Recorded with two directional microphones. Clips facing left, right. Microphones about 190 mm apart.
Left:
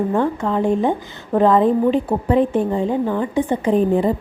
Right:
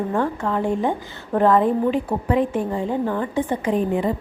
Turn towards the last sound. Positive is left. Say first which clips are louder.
# left 5 dB
turn(degrees=30)  # may be behind; listen again after turning